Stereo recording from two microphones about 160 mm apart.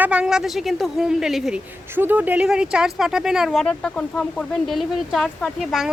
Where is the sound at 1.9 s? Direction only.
10° right (ahead or behind).